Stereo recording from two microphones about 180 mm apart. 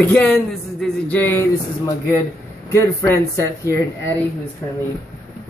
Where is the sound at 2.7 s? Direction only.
15° left (ahead or behind).